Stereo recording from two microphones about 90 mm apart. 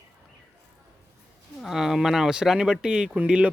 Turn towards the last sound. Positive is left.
turn(degrees=-15)  # may be behind; listen again after turning